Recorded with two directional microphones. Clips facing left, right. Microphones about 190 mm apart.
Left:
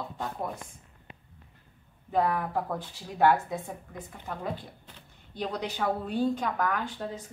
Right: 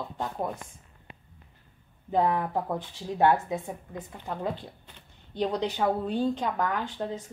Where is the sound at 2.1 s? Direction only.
20° right (ahead or behind).